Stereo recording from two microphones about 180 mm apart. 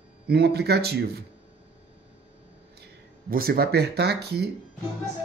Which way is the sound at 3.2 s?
55° right (ahead or behind).